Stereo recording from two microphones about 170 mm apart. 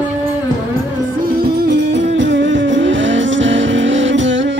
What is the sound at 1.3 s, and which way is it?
Music, 65° right (ahead or behind).